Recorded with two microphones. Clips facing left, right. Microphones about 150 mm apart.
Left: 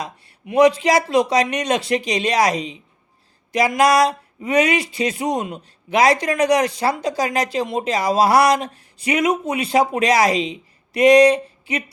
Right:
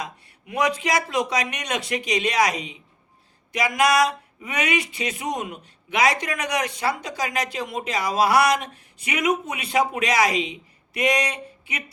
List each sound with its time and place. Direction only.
0.0 s speech: 30° left (ahead or behind)